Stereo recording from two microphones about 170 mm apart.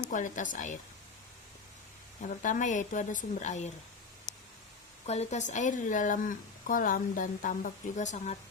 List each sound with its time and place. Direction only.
0.1 s speech: 50° left (ahead or behind)
2.2 s speech: 50° left (ahead or behind)
5.0 s speech: 40° left (ahead or behind)